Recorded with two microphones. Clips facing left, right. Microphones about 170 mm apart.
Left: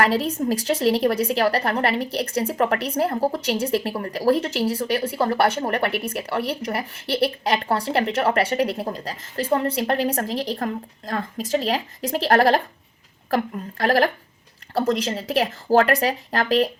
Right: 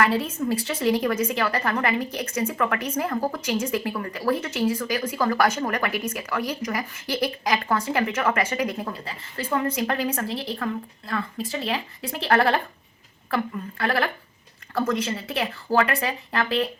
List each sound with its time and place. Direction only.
0.0 s a woman's voice: 35° left (ahead or behind)